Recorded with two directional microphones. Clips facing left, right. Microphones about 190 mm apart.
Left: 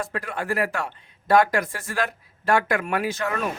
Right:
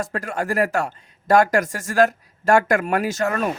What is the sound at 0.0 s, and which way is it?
Speech, 45° right (ahead or behind).